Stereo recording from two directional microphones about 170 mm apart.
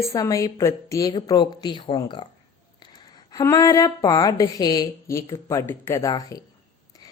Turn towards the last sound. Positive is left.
turn(degrees=20)  # may be behind; listen again after turning